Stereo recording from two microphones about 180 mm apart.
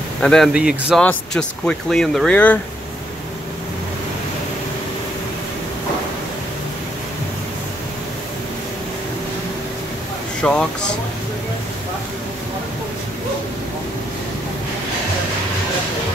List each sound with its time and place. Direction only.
0.2 s speech: 5° left (ahead or behind)
10.4 s speech: 5° left (ahead or behind)